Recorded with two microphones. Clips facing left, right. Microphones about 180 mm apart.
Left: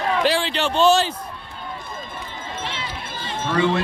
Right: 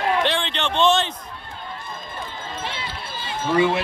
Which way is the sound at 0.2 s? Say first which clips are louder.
Left 3 dB; 5° left (ahead or behind).